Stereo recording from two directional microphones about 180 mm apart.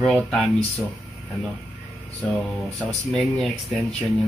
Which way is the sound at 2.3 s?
5° left (ahead or behind).